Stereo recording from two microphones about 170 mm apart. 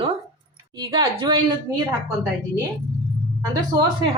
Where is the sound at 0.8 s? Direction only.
25° right (ahead or behind).